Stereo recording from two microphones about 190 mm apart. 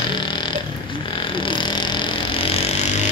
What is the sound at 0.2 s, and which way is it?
Burping, 25° left (ahead or behind).